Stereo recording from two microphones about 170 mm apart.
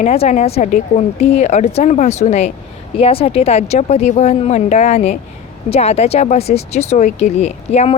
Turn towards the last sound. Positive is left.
turn(degrees=40)  # may be behind; listen again after turning